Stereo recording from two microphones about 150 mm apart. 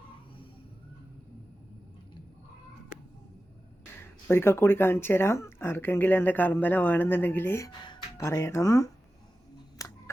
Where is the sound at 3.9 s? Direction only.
15° left (ahead or behind).